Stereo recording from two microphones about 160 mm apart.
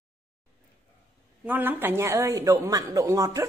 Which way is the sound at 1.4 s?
10° right (ahead or behind).